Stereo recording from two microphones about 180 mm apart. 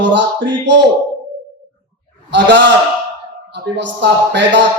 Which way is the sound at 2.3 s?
75° right (ahead or behind).